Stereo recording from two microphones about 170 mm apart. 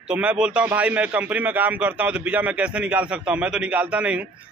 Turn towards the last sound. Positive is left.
turn(degrees=-5)  # may be behind; listen again after turning